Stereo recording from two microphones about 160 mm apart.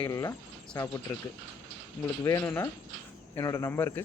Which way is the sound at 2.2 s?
20° left (ahead or behind).